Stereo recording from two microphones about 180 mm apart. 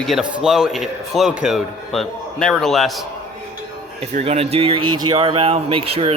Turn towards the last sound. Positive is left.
turn(degrees=-35)  # may be behind; listen again after turning